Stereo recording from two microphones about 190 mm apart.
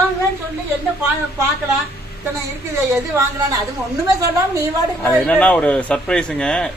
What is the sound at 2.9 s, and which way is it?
Speech, 15° right (ahead or behind).